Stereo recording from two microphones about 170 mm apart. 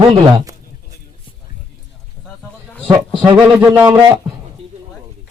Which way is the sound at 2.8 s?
25° right (ahead or behind).